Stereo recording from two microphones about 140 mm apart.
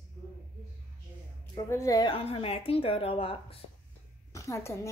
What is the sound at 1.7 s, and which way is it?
Speech, 25° left (ahead or behind).